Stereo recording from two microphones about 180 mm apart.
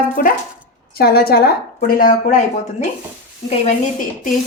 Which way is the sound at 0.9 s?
60° left (ahead or behind).